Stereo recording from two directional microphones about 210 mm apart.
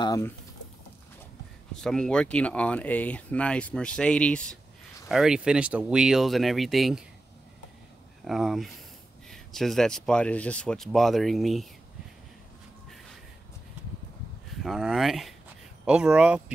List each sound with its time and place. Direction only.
0.0 s speech: 15° left (ahead or behind)
1.8 s speech: 5° left (ahead or behind)
8.3 s speech: centre (ahead or behind)
14.6 s speech: centre (ahead or behind)